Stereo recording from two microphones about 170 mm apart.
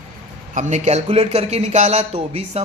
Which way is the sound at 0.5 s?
45° right (ahead or behind).